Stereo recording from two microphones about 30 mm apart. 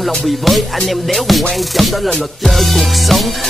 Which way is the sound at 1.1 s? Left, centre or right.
Centre.